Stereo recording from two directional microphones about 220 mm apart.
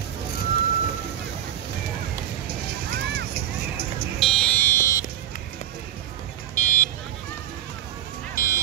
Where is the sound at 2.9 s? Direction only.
45° right (ahead or behind).